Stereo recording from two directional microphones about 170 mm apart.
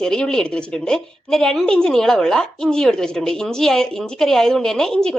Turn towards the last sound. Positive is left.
turn(degrees=5)  # may be behind; listen again after turning